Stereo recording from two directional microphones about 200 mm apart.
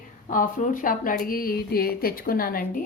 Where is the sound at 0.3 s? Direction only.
40° left (ahead or behind).